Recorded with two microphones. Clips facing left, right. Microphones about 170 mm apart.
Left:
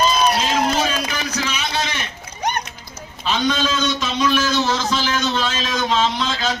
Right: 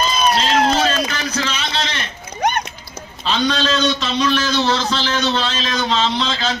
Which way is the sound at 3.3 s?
10° left (ahead or behind).